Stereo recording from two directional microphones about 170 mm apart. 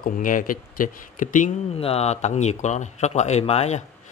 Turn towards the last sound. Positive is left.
turn(degrees=40)  # may be behind; listen again after turning